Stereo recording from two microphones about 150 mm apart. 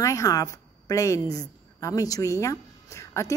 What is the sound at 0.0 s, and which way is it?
A woman's voice, 20° left (ahead or behind).